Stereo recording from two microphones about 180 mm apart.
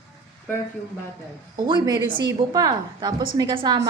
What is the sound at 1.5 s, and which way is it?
A woman's voice, 25° right (ahead or behind).